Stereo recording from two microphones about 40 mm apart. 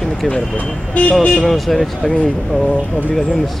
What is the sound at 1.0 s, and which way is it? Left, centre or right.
Speech, left.